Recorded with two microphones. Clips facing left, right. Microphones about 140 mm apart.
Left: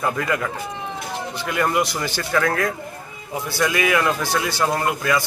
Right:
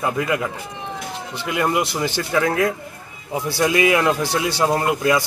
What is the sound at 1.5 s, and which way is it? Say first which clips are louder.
A man's voice: right 1 dB; 15° right (ahead or behind).